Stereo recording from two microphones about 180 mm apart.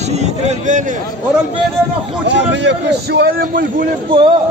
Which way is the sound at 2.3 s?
85° right.